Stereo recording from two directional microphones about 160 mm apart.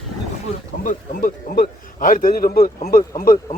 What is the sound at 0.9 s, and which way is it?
A man's voice, 60° left (ahead or behind).